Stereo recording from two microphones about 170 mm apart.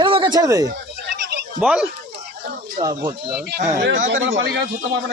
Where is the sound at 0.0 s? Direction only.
30° right (ahead or behind).